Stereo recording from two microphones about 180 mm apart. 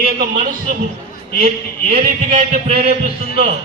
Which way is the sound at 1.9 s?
50° right (ahead or behind).